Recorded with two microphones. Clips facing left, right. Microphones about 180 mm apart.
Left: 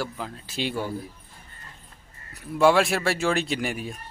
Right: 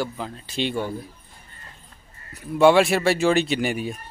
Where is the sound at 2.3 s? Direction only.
Centre (ahead or behind).